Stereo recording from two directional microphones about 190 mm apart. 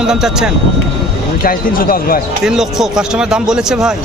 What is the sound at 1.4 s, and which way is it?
Speech, 50° left (ahead or behind).